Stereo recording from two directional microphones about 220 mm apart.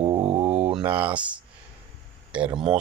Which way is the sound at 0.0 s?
25° right (ahead or behind).